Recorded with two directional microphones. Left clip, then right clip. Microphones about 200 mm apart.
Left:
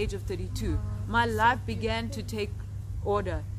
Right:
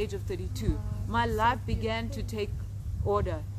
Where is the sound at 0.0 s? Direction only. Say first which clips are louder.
Left 1 dB; 20° left (ahead or behind).